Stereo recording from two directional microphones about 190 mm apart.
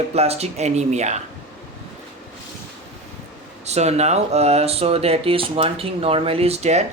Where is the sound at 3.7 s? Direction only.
35° right (ahead or behind).